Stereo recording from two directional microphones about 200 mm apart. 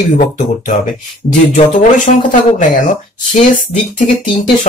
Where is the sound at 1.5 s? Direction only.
40° left (ahead or behind).